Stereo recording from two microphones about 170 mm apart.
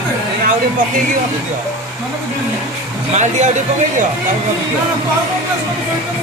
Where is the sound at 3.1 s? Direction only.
45° right (ahead or behind).